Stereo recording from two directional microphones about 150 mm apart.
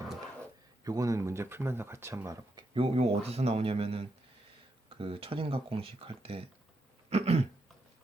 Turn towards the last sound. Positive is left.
turn(degrees=-45)  # may be behind; listen again after turning